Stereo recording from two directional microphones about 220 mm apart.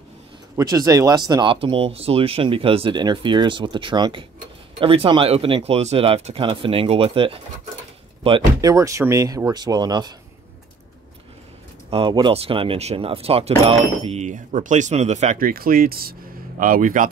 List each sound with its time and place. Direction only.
0.6 s speech: 15° right (ahead or behind)
11.9 s speech: 20° right (ahead or behind); by 17.1 s 35° right (ahead or behind)